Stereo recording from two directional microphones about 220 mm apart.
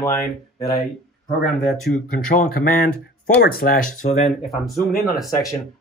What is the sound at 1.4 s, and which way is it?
Speech, centre (ahead or behind).